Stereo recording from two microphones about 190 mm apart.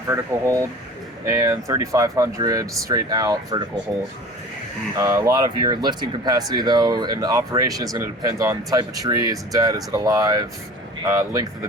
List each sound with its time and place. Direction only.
0.1 s speech: 15° right (ahead or behind)
4.9 s speech: 15° right (ahead or behind)